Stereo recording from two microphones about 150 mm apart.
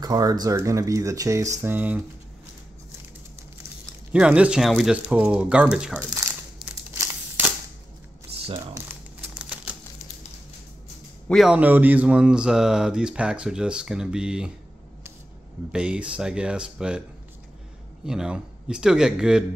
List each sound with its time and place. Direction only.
0.0 s speech: 25° right (ahead or behind)
4.1 s speech: 5° right (ahead or behind)
7.0 s a sound: 15° right (ahead or behind)
9.3 s typewriter: 10° right (ahead or behind)
11.2 s a man's voice: centre (ahead or behind)
11.5 s speech: 10° right (ahead or behind)
15.7 s speech: 5° right (ahead or behind)
18.0 s speech: 5° right (ahead or behind)